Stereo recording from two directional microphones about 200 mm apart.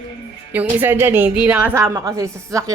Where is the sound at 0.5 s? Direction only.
10° right (ahead or behind).